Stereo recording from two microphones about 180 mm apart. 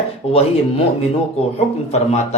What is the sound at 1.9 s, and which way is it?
Speech, 40° left (ahead or behind).